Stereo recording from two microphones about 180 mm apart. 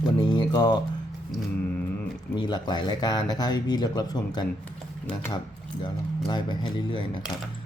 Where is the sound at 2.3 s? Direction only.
25° left (ahead or behind).